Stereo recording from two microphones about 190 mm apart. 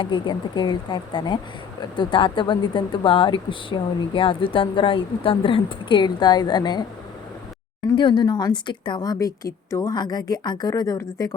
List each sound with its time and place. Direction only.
0.0 s speech: 25° left (ahead or behind)
7.9 s speech: 25° left (ahead or behind)